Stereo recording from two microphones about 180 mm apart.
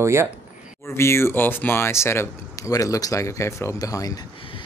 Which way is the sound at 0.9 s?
15° left (ahead or behind).